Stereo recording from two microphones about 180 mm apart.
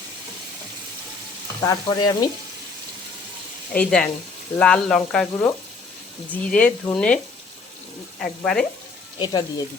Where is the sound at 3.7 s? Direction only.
5° left (ahead or behind).